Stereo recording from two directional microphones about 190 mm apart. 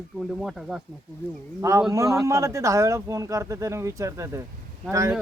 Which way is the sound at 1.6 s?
15° right (ahead or behind).